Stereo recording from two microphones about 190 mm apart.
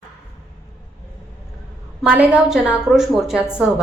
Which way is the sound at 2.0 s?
5° right (ahead or behind).